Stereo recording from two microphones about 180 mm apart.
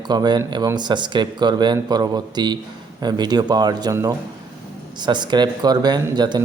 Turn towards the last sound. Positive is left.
turn(degrees=-25)  # may be behind; listen again after turning